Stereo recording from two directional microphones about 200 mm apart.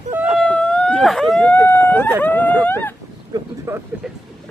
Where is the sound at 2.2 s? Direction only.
10° left (ahead or behind).